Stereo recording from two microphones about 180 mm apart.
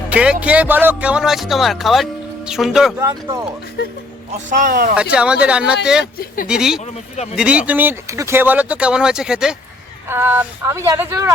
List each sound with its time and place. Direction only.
0.1 s speech: 5° right (ahead or behind)
3.0 s speech: 15° right (ahead or behind)
4.4 s speech: 45° right (ahead or behind)
4.9 s speech: 5° right (ahead or behind)
6.1 s speech: 50° left (ahead or behind)
6.5 s speech: 5° right (ahead or behind)